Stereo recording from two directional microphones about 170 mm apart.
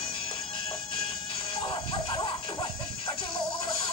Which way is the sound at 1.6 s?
25° left (ahead or behind).